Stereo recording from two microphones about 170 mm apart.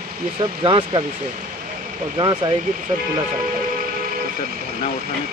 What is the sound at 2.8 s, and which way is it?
Speech, 55° right (ahead or behind).